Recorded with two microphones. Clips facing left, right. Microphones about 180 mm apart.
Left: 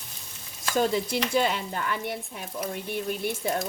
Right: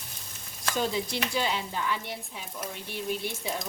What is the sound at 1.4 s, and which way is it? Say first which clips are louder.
Speech: left 3 dB; 55° left (ahead or behind).